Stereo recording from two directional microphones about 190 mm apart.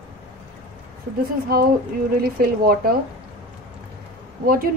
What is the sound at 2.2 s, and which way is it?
Speech, 50° right (ahead or behind).